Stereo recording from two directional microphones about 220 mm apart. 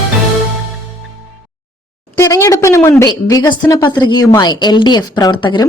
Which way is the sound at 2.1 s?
15° left (ahead or behind).